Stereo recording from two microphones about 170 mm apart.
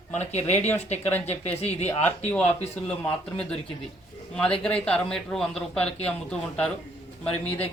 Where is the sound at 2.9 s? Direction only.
5° left (ahead or behind).